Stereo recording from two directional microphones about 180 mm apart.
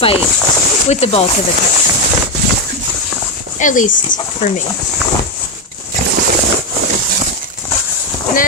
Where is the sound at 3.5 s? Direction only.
45° left (ahead or behind).